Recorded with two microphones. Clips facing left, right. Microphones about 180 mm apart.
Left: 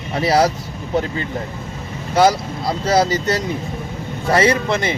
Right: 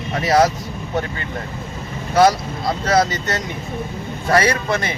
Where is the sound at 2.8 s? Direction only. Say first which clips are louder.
Left 2 dB; 30° left (ahead or behind).